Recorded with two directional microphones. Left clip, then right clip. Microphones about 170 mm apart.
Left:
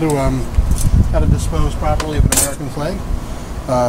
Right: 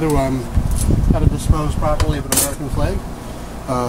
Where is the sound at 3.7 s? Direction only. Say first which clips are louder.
Left 5 dB; 45° left (ahead or behind).